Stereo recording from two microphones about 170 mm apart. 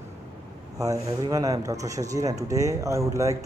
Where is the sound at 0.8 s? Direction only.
20° right (ahead or behind).